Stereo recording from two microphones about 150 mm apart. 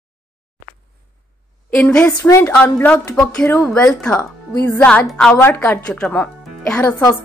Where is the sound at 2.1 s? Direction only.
20° left (ahead or behind); by 5.3 s 5° left (ahead or behind).